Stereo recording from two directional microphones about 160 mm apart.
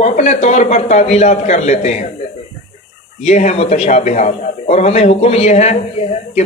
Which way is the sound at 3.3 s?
45° left (ahead or behind).